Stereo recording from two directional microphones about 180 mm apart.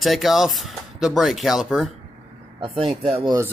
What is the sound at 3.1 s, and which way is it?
Speech, 25° right (ahead or behind).